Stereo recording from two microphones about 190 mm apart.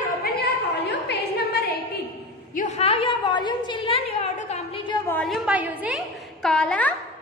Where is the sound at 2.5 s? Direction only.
40° left (ahead or behind).